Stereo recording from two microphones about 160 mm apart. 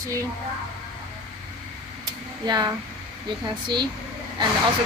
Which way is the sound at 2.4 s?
25° right (ahead or behind).